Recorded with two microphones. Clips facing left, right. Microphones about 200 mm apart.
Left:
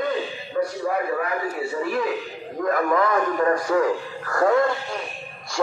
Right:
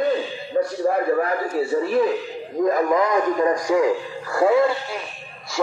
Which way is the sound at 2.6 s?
20° right (ahead or behind).